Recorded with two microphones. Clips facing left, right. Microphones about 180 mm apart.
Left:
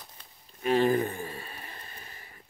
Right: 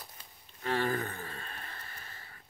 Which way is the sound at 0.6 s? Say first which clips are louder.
Left 8 dB; 20° left (ahead or behind).